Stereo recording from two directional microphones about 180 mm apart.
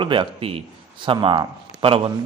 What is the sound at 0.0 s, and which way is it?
A man's voice, 30° right (ahead or behind).